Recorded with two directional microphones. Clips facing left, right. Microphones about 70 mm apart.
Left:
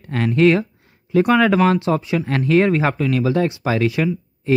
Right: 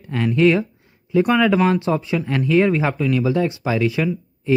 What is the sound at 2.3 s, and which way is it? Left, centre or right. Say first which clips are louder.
Speech: left 1 dB; left.